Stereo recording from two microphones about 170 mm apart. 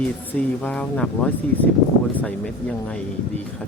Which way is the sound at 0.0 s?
10° left (ahead or behind).